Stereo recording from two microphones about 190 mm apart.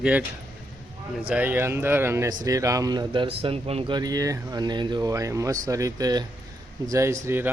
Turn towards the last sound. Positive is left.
turn(degrees=-10)  # may be behind; listen again after turning